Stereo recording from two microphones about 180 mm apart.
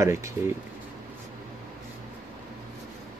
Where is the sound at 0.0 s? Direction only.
15° right (ahead or behind).